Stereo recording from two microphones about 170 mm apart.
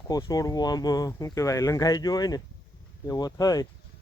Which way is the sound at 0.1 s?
20° left (ahead or behind).